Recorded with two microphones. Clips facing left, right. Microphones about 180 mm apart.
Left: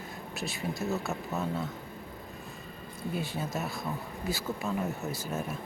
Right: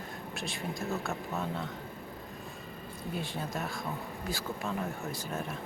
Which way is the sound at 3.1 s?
5° left (ahead or behind).